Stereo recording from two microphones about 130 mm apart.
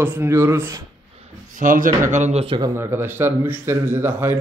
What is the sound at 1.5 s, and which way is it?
Speech, 90° right.